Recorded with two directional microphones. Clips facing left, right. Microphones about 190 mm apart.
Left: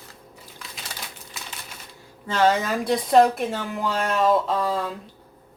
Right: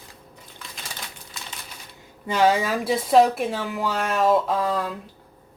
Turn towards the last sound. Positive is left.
turn(degrees=0)  # may be behind; listen again after turning